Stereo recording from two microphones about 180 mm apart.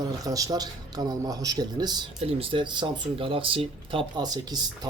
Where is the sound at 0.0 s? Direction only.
20° right (ahead or behind).